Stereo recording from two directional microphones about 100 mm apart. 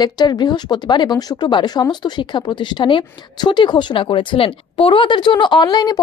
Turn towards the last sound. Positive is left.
turn(degrees=45)  # may be behind; listen again after turning